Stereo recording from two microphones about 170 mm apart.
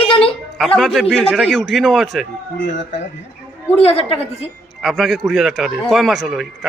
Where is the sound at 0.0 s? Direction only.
35° left (ahead or behind).